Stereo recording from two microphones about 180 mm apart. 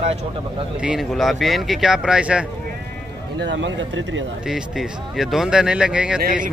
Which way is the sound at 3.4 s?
85° right.